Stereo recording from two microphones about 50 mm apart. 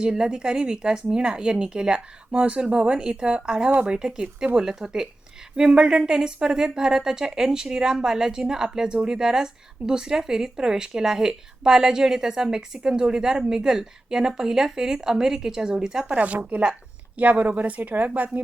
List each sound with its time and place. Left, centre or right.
0.0 s speech: centre
16.1 s speech: right